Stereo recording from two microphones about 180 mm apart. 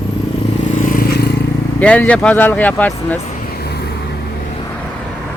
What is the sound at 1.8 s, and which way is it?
Speech, 5° left (ahead or behind).